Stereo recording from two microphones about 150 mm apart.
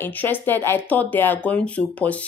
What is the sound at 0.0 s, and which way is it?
Speech, 15° left (ahead or behind).